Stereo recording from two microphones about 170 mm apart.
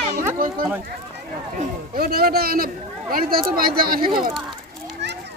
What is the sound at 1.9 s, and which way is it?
A man's voice, 65° right (ahead or behind).